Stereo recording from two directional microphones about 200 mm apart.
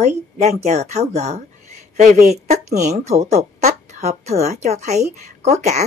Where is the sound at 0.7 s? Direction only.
35° right (ahead or behind).